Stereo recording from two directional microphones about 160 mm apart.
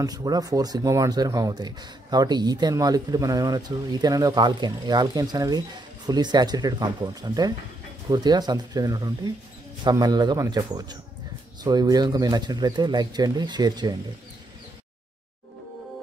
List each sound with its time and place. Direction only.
0.0 s speech: 25° right (ahead or behind)